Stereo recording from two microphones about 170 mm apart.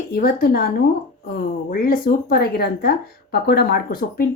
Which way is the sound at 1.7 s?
60° left (ahead or behind).